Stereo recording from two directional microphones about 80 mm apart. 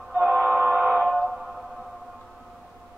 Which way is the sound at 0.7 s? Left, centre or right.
Centre.